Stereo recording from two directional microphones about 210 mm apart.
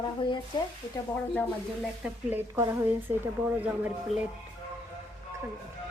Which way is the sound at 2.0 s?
10° right (ahead or behind).